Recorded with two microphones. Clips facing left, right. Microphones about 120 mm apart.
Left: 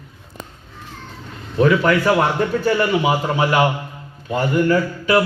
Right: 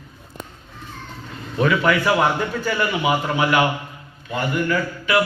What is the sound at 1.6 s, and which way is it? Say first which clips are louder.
A man's voice: left 2 dB; 35° left (ahead or behind).